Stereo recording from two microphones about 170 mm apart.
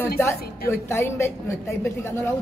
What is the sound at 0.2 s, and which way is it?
Speech, 15° left (ahead or behind).